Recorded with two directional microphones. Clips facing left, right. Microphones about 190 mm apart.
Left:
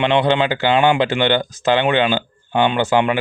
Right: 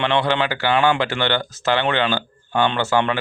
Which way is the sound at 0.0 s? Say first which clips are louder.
Left 4 dB; 20° left (ahead or behind).